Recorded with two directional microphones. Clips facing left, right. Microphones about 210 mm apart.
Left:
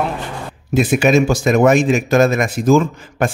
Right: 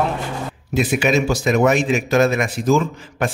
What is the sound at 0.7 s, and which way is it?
Speech, 45° left (ahead or behind).